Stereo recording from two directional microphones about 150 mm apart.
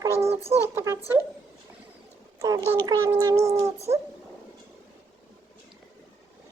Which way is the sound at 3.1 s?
20° right (ahead or behind).